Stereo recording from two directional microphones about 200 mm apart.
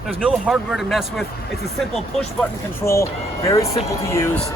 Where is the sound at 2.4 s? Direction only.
15° left (ahead or behind).